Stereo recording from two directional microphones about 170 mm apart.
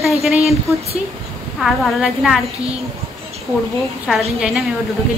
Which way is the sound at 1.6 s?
Centre (ahead or behind).